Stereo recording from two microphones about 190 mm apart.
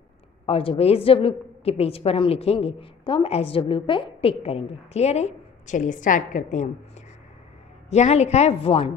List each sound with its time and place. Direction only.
0.5 s a woman's voice: 30° left (ahead or behind)
7.9 s a woman's voice: 35° left (ahead or behind)